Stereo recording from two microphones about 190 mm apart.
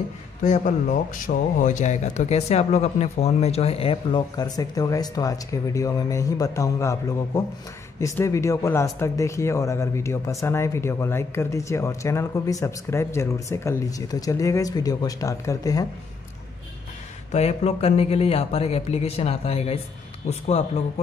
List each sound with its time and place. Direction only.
0.4 s speech: 40° left (ahead or behind); by 15.9 s 20° left (ahead or behind)
17.3 s speech: 35° left (ahead or behind)